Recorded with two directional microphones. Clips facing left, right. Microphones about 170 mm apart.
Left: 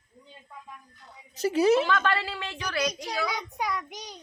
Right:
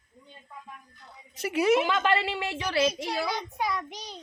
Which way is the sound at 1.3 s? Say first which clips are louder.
Left 2 dB; 35° left (ahead or behind).